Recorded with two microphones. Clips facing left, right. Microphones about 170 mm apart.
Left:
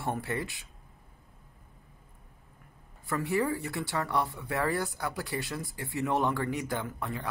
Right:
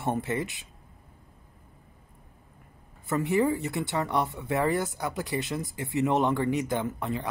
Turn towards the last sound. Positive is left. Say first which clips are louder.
# right 5 dB
turn(degrees=-20)  # may be behind; listen again after turning